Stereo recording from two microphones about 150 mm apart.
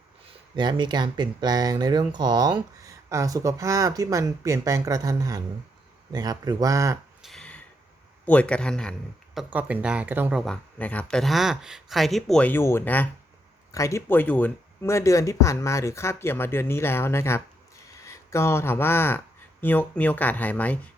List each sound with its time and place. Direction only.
0.5 s speech: 30° right (ahead or behind)
7.2 s a sound: centre (ahead or behind)
8.3 s speech: 10° left (ahead or behind); by 10.4 s 10° right (ahead or behind)
10.4 s speech: 5° left (ahead or behind)